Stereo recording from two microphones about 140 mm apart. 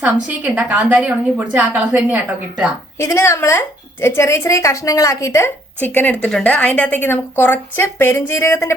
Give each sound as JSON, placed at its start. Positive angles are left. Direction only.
{"t": 0.0, "sound": "a woman's voice", "side_deg": -10}
{"t": 3.0, "sound": "a woman's voice", "side_deg": 20}